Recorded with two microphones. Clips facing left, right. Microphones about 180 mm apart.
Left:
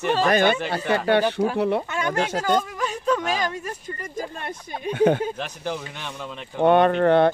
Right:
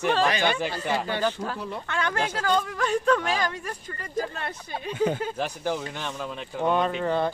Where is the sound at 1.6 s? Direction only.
65° left (ahead or behind).